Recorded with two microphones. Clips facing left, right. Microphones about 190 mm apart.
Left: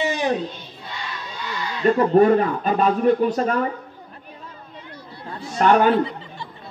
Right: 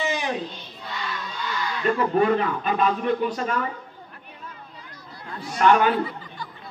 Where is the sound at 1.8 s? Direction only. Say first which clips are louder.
Left 6 dB; 35° left (ahead or behind).